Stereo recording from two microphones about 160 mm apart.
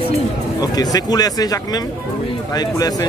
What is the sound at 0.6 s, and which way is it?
Speech, 25° left (ahead or behind).